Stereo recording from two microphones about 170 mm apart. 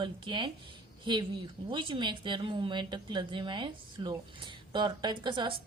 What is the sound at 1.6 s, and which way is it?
Speech, 30° right (ahead or behind).